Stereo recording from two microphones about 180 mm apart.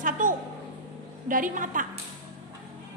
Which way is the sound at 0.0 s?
50° right (ahead or behind).